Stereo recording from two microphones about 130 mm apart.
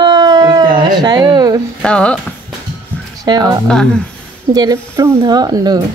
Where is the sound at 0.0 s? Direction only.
35° right (ahead or behind).